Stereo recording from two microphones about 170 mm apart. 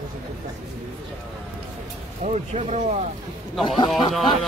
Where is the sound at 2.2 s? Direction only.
40° right (ahead or behind).